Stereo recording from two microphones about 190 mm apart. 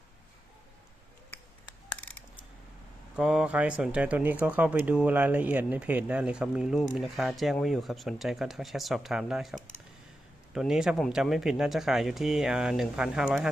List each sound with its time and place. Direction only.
3.2 s speech: 5° right (ahead or behind)